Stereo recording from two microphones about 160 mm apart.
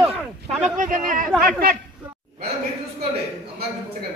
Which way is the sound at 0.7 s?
55° right (ahead or behind).